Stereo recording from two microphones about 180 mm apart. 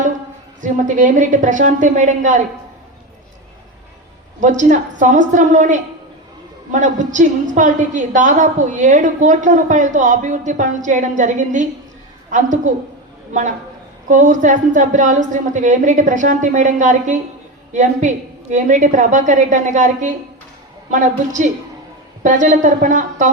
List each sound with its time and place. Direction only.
0.6 s a woman's voice: 45° right (ahead or behind)
4.4 s a woman's voice: 45° right (ahead or behind)
14.1 s a woman's voice: 45° right (ahead or behind)
18.5 s a woman's voice: 45° right (ahead or behind)